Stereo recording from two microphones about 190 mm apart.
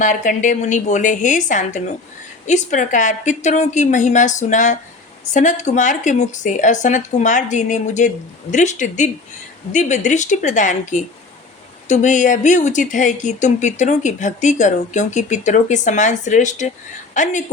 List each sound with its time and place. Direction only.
0.0 s speech: 40° left (ahead or behind)